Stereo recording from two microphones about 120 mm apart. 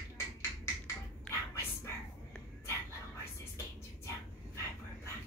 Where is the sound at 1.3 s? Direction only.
5° left (ahead or behind).